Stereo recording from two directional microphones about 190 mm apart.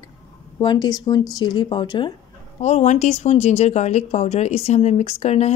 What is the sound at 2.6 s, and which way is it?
Speech, 35° left (ahead or behind).